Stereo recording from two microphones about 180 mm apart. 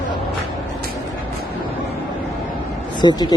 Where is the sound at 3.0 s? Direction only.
25° left (ahead or behind).